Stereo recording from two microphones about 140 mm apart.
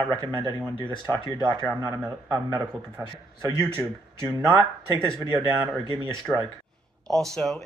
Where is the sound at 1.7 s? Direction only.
20° right (ahead or behind).